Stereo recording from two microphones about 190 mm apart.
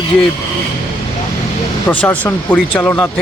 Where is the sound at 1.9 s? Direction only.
10° left (ahead or behind).